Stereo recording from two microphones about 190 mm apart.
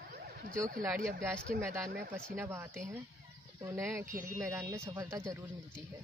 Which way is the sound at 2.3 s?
10° right (ahead or behind).